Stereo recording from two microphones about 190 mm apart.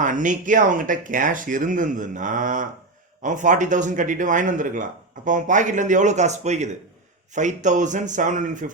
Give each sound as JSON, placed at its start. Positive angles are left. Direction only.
{"t": 0.0, "sound": "speech", "side_deg": -40}